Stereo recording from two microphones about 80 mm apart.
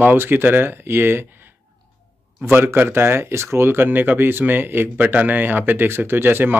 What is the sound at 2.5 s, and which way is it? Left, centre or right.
Speech, right.